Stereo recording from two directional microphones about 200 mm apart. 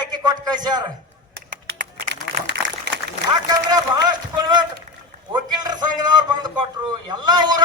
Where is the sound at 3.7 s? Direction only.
20° right (ahead or behind).